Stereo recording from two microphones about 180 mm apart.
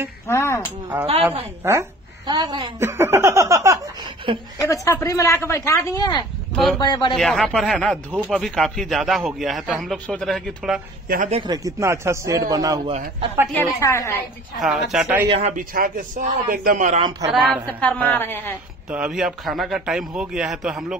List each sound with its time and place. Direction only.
0.3 s speech: 15° left (ahead or behind)
0.9 s a woman's voice: 10° right (ahead or behind)
4.6 s speech: 15° left (ahead or behind)
6.5 s a man's voice: centre (ahead or behind)
6.8 s speech: 25° left (ahead or behind)
7.2 s a man's voice: 5° left (ahead or behind)
11.1 s a man's voice: 50° right (ahead or behind)
11.3 s a man's voice: 25° right (ahead or behind)
13.6 s speech: 15° left (ahead or behind)
14.6 s a man's voice: centre (ahead or behind)
15.2 s speech: 35° right (ahead or behind)
15.7 s a man's voice: 50° right (ahead or behind)
17.3 s a man's voice: centre (ahead or behind)
18.9 s a man's voice: 5° right (ahead or behind)